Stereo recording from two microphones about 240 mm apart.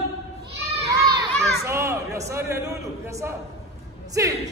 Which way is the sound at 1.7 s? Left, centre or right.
Centre.